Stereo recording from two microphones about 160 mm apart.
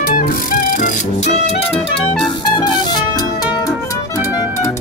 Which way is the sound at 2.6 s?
25° left (ahead or behind).